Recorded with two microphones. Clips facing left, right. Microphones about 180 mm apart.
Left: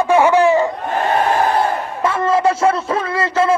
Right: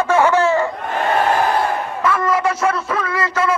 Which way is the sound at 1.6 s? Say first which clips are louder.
Left 2 dB; 25° left (ahead or behind).